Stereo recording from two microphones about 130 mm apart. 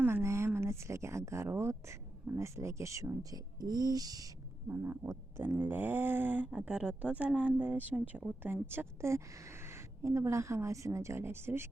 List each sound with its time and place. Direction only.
0.0 s speech: 20° right (ahead or behind)
4.7 s a woman's voice: 20° right (ahead or behind)